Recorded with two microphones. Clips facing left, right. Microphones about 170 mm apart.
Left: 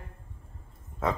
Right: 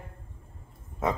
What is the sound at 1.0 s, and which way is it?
Speech, 20° right (ahead or behind).